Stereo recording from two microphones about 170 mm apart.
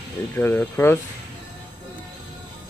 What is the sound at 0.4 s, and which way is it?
Speech, 15° left (ahead or behind).